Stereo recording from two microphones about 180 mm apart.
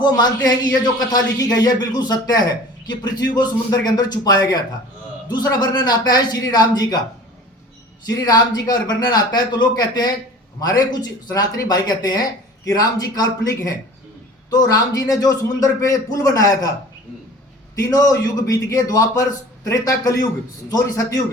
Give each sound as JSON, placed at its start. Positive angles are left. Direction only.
{"t": 0.9, "sound": "speech", "side_deg": 20}
{"t": 8.0, "sound": "speech", "side_deg": 20}
{"t": 17.8, "sound": "speech", "side_deg": 20}